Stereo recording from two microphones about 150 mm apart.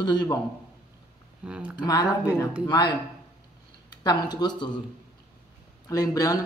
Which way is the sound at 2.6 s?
30° left (ahead or behind).